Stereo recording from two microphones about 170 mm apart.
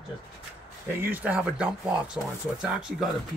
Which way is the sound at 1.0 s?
10° right (ahead or behind).